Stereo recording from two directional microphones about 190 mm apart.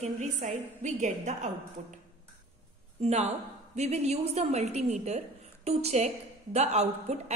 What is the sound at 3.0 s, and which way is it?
A woman's voice, 35° right (ahead or behind).